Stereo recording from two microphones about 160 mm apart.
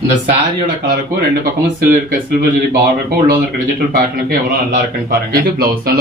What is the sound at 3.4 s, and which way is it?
Speech, 65° right (ahead or behind).